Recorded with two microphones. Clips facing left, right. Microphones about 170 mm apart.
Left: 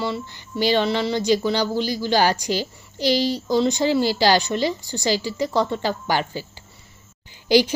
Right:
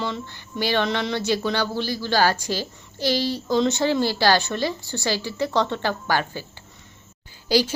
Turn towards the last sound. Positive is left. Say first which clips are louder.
# left 4 dB
turn(degrees=15)  # may be behind; listen again after turning